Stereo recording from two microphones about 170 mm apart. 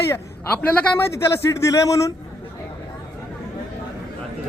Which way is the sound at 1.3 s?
15° left (ahead or behind).